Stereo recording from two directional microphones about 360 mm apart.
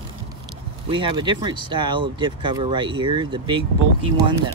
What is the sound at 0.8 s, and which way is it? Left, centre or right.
Speech, centre.